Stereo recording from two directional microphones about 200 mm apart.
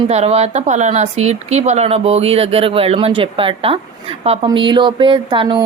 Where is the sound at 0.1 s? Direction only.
30° right (ahead or behind).